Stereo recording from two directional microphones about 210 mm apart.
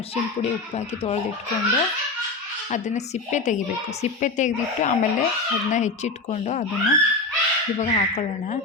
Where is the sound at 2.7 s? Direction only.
35° left (ahead or behind).